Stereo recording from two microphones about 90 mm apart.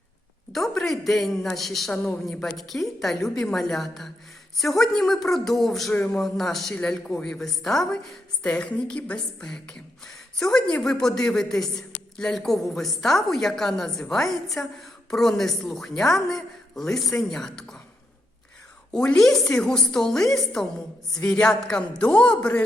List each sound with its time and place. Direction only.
0.5 s a man's voice: 5° left (ahead or behind)
5.9 s a man's voice: 15° left (ahead or behind)
6.1 s a man's voice: 5° left (ahead or behind)
18.9 s a man's voice: 5° left (ahead or behind)